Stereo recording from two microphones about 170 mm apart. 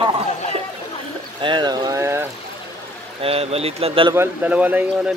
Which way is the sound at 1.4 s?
25° right (ahead or behind).